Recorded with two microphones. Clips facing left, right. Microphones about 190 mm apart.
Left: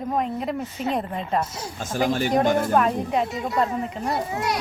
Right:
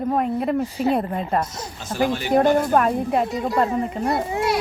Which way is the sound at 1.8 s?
50° left (ahead or behind).